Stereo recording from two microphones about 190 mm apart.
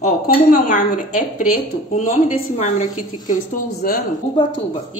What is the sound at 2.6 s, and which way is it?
Speech, 40° left (ahead or behind).